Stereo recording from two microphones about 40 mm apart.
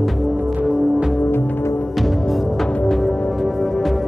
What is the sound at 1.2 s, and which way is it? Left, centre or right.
Music, left.